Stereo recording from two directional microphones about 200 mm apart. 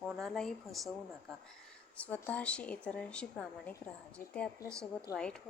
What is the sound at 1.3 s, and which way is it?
A woman's voice, 5° left (ahead or behind).